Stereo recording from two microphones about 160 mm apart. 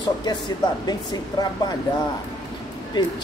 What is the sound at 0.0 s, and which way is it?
A man's voice, 25° left (ahead or behind).